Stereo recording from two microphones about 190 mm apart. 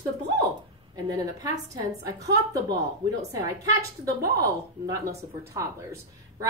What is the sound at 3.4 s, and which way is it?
Speech, 20° right (ahead or behind).